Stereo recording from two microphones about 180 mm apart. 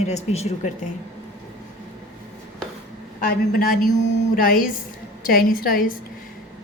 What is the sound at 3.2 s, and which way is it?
A woman's voice, 55° left (ahead or behind).